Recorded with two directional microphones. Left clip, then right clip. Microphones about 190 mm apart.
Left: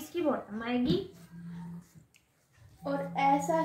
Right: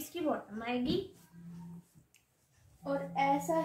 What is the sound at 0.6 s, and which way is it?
Speech, 20° left (ahead or behind).